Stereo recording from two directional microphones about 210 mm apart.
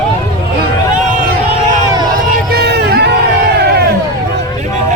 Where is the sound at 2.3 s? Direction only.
50° right (ahead or behind).